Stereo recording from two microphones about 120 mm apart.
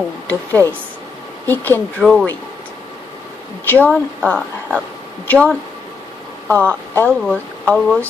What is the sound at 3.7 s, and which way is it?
Speech, 15° left (ahead or behind).